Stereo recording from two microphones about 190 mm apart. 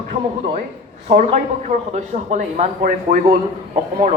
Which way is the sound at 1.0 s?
35° right (ahead or behind).